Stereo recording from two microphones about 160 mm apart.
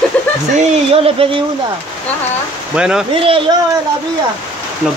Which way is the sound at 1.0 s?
35° right (ahead or behind).